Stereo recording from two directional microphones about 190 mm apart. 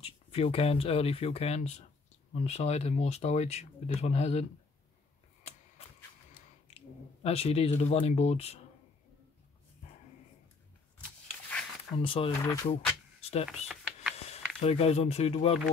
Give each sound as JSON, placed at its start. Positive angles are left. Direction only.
{"t": 0.0, "sound": "speech", "side_deg": 30}
{"t": 7.2, "sound": "speech", "side_deg": 30}
{"t": 12.0, "sound": "speech", "side_deg": 30}
{"t": 13.7, "sound": "a sound", "side_deg": -5}
{"t": 14.6, "sound": "speech", "side_deg": 30}